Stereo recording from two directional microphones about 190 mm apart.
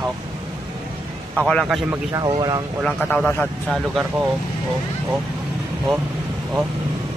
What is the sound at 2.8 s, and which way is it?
Speech, 5° left (ahead or behind).